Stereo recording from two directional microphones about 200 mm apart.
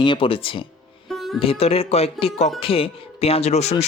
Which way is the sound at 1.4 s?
30° left (ahead or behind).